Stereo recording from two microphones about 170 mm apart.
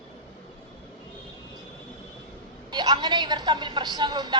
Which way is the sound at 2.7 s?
25° right (ahead or behind).